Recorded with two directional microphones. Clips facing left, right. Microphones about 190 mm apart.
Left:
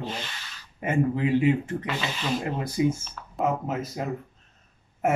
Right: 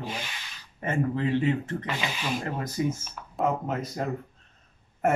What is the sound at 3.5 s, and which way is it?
Speech, 5° left (ahead or behind).